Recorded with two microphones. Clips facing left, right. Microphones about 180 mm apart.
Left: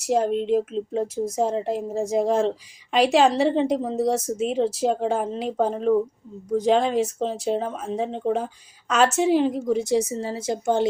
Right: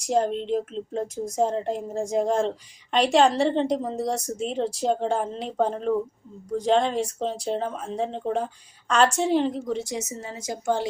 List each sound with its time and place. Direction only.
0.0 s a woman's voice: 5° left (ahead or behind)
9.8 s a woman's voice: 30° left (ahead or behind)